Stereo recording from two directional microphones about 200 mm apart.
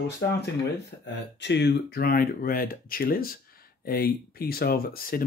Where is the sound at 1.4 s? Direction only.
60° left (ahead or behind).